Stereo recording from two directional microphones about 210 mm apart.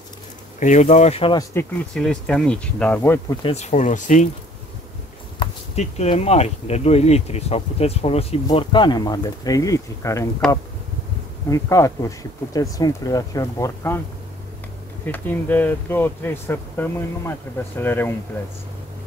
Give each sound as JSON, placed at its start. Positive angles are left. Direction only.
{"t": 0.6, "sound": "speech", "side_deg": 35}
{"t": 1.5, "sound": "speech", "side_deg": 10}
{"t": 3.4, "sound": "speech", "side_deg": 30}
{"t": 5.4, "sound": "speech", "side_deg": 30}
{"t": 11.5, "sound": "speech", "side_deg": 15}
{"t": 15.0, "sound": "speech", "side_deg": 10}